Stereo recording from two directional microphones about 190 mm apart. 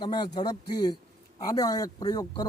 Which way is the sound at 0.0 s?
20° left (ahead or behind).